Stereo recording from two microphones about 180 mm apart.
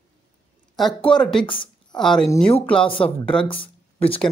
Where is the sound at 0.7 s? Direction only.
5° left (ahead or behind).